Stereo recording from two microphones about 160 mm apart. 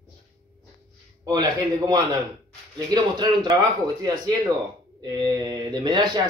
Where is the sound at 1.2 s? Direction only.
25° right (ahead or behind).